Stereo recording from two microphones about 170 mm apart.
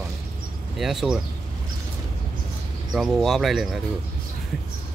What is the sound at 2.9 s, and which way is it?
Speech, centre (ahead or behind).